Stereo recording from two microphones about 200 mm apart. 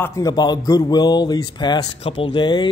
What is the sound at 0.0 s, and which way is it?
A man's voice, 15° left (ahead or behind).